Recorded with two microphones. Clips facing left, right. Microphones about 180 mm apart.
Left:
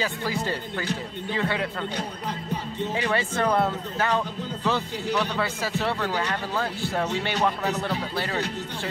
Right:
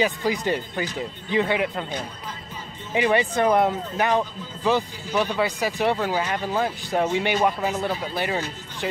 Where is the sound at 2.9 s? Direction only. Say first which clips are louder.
Right 7 dB; 15° right (ahead or behind).